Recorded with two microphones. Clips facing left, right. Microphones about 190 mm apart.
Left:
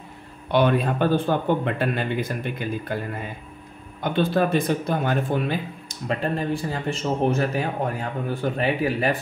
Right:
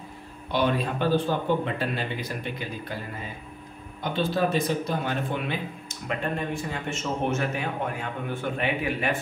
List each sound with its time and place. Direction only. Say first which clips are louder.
0.5 s speech: left 5 dB; 60° left (ahead or behind)
4.0 s speech: left 4 dB; 55° left (ahead or behind)
6.0 s a man's voice: left 4 dB; 35° left (ahead or behind)